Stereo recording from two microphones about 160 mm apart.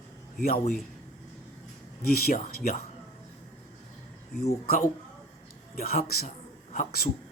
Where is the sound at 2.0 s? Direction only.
70° left (ahead or behind).